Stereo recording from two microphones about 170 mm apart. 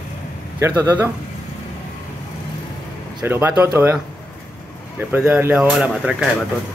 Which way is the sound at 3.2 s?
15° right (ahead or behind).